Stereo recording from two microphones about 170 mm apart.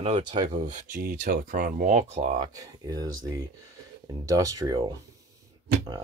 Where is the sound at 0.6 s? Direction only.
50° right (ahead or behind).